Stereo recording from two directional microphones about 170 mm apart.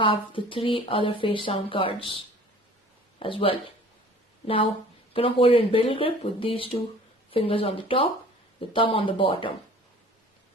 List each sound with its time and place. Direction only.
0.0 s speech: 30° left (ahead or behind)
5.1 s speech: 30° left (ahead or behind)